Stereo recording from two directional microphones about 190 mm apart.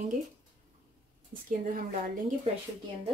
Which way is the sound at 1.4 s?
45° right (ahead or behind).